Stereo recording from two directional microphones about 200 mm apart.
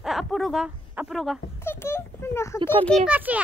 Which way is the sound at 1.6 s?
10° left (ahead or behind).